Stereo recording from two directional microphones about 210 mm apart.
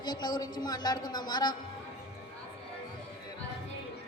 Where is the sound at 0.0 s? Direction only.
20° left (ahead or behind).